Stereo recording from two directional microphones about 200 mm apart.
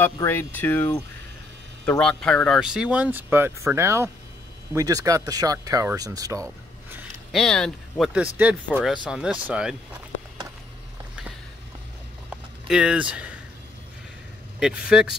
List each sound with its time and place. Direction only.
0.0 s speech: 10° left (ahead or behind); by 6.4 s 15° right (ahead or behind)
7.3 s speech: 5° left (ahead or behind)
12.6 s speech: 5° right (ahead or behind)
14.6 s speech: 5° right (ahead or behind)